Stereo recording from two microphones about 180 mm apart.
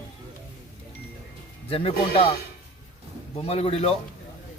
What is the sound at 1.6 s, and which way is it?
Speech, 30° left (ahead or behind).